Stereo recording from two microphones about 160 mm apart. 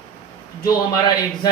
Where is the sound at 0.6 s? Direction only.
25° left (ahead or behind).